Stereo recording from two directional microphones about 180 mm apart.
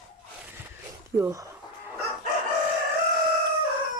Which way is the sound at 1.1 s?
15° right (ahead or behind).